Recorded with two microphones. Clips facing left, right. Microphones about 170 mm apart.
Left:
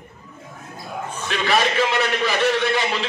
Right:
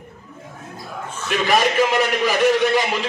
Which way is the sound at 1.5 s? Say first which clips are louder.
Right 2 dB; 15° right (ahead or behind).